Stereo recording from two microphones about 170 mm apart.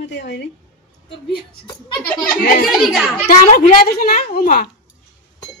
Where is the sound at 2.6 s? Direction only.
Centre (ahead or behind).